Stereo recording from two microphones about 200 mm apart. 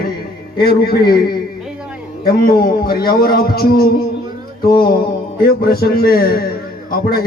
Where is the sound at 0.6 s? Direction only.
50° left (ahead or behind).